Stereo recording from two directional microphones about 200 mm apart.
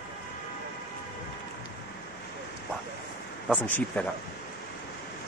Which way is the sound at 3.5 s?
10° left (ahead or behind).